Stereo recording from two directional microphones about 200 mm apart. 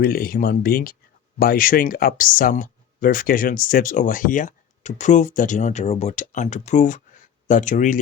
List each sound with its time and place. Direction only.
0.0 s speech: 50° left (ahead or behind)